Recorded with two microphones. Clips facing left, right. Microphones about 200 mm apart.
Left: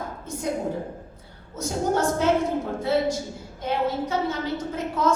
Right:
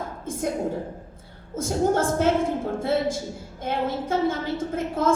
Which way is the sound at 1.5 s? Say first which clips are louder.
Right 2 dB; 50° right (ahead or behind).